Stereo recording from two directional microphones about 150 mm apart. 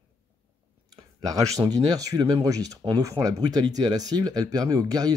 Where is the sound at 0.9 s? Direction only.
25° right (ahead or behind).